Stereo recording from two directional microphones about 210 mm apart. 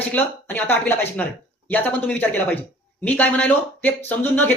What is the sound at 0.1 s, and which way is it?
Speech, 10° left (ahead or behind).